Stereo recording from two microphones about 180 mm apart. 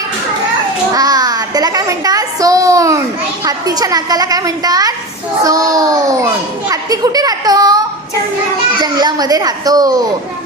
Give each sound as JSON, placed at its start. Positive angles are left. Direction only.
{"t": 0.9, "sound": "a child's voice", "side_deg": -20}
{"t": 8.8, "sound": "a woman's voice", "side_deg": -20}